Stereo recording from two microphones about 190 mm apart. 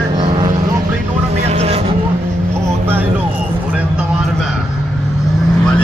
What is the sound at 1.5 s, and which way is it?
Vehicle, 30° right (ahead or behind).